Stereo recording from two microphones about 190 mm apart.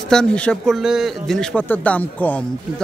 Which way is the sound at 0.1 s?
5° left (ahead or behind).